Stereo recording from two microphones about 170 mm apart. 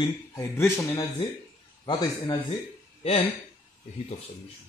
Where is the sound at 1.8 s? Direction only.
25° left (ahead or behind).